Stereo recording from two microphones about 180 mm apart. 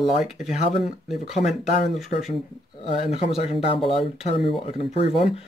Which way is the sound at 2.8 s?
35° left (ahead or behind).